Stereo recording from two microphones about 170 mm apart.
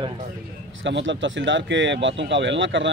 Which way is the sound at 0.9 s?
90° right.